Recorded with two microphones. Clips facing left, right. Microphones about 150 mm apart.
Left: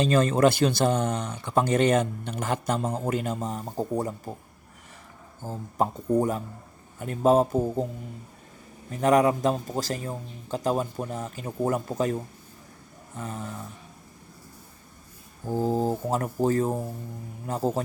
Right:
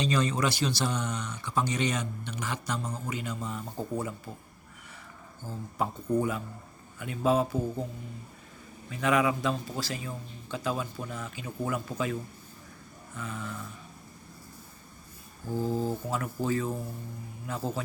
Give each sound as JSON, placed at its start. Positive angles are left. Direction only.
{"t": 0.0, "sound": "speech", "side_deg": 50}
{"t": 5.4, "sound": "speech", "side_deg": 45}
{"t": 6.1, "sound": "a sound", "side_deg": 40}
{"t": 7.0, "sound": "speech", "side_deg": 45}
{"t": 8.9, "sound": "speech", "side_deg": 45}
{"t": 13.1, "sound": "a sound", "side_deg": 40}
{"t": 15.4, "sound": "speech", "side_deg": 45}